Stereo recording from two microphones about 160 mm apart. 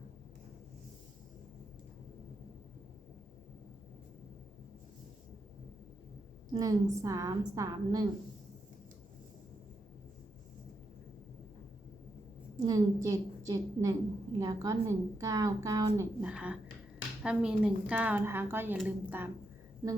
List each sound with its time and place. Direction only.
6.5 s a woman's voice: 20° right (ahead or behind)
12.6 s a woman's voice: 20° right (ahead or behind)
16.2 s a woman's voice: 5° right (ahead or behind)